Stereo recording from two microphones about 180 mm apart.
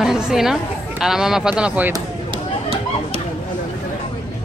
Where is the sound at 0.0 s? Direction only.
Centre (ahead or behind).